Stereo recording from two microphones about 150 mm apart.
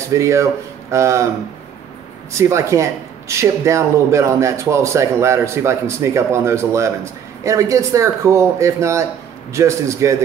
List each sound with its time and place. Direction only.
0.1 s speech: 20° right (ahead or behind)
2.3 s speech: 20° right (ahead or behind)